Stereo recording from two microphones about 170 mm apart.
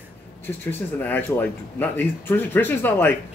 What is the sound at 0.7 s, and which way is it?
Speech, 10° left (ahead or behind).